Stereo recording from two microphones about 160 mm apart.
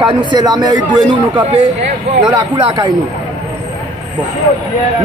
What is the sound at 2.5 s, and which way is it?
Speech, 30° right (ahead or behind).